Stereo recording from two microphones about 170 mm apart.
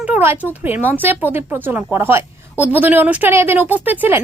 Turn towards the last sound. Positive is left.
turn(degrees=-10)  # may be behind; listen again after turning